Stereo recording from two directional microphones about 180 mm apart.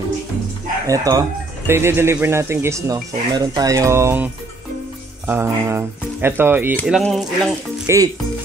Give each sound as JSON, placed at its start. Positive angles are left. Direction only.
{"t": 0.8, "sound": "speech", "side_deg": -20}
{"t": 6.9, "sound": "speech", "side_deg": 0}
{"t": 7.8, "sound": "speech", "side_deg": -20}